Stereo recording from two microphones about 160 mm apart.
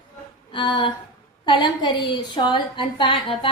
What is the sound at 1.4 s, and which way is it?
A woman's voice, 30° left (ahead or behind).